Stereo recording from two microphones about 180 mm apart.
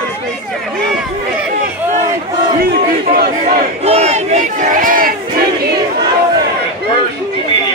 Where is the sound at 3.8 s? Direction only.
35° right (ahead or behind).